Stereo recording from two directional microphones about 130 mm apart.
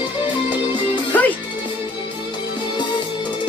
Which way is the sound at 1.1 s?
15° left (ahead or behind).